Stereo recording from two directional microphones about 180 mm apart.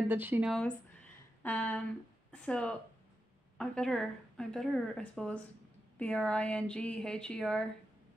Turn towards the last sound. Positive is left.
turn(degrees=5)  # may be behind; listen again after turning